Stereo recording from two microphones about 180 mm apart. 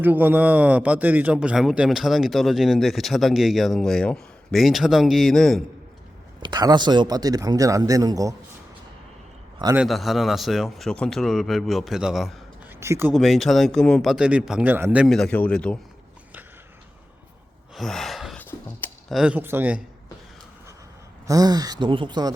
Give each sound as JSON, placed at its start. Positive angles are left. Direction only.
{"t": 0.0, "sound": "a man's voice", "side_deg": -10}
{"t": 6.4, "sound": "speech", "side_deg": -25}
{"t": 9.7, "sound": "a man's voice", "side_deg": 0}
{"t": 12.8, "sound": "speech", "side_deg": -15}
{"t": 13.1, "sound": "a man's voice", "side_deg": 0}
{"t": 17.7, "sound": "gasp", "side_deg": 0}
{"t": 18.8, "sound": "speech", "side_deg": 0}
{"t": 21.2, "sound": "speech", "side_deg": -20}